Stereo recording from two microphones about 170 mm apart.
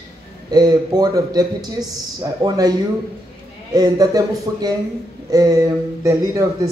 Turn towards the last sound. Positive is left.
turn(degrees=-20)  # may be behind; listen again after turning